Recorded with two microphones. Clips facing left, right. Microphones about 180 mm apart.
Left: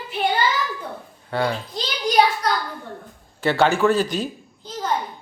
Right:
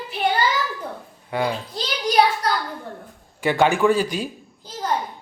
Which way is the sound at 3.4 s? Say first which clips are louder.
Even; 15° right (ahead or behind).